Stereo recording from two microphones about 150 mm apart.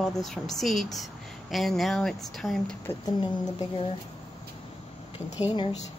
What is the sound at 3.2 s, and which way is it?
Speech, 30° left (ahead or behind).